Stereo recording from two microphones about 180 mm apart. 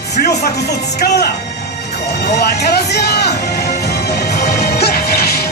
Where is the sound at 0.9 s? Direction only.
60° left (ahead or behind).